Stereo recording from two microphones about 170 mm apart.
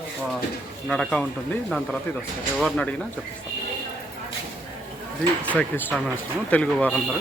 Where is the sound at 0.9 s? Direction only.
5° left (ahead or behind).